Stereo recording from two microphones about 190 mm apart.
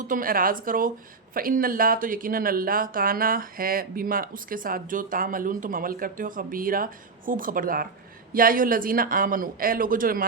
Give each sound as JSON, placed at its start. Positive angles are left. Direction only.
{"t": 0.0, "sound": "a woman's voice", "side_deg": -45}